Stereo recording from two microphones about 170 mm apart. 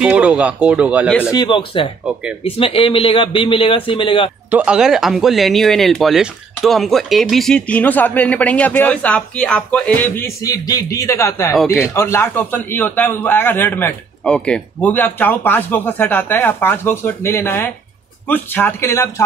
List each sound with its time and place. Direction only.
0.0 s speech: 5° right (ahead or behind)
1.3 s speech: 25° left (ahead or behind)
4.5 s speech: 5° right (ahead or behind); by 11.5 s 15° left (ahead or behind)
11.5 s a man's voice: centre (ahead or behind)
11.9 s speech: 15° left (ahead or behind)